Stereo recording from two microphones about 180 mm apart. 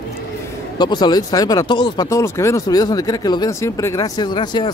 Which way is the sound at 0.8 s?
25° left (ahead or behind).